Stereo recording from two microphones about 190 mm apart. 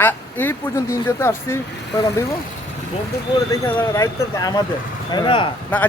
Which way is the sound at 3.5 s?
15° left (ahead or behind).